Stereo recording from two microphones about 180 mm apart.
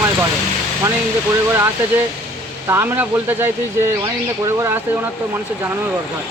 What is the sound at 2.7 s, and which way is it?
Speech, 10° right (ahead or behind).